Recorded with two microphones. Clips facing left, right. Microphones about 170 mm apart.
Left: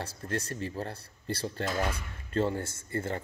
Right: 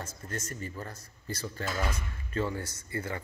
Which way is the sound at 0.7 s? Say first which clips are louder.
Left 5 dB; 30° left (ahead or behind).